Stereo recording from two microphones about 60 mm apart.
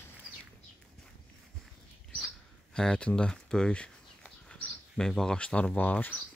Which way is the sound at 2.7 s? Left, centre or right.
Centre.